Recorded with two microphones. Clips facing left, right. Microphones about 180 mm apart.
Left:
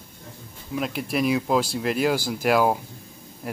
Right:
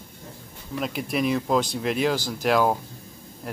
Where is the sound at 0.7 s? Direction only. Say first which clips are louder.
Left 1 dB; centre (ahead or behind).